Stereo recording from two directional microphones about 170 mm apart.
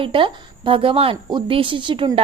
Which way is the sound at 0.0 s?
30° right (ahead or behind).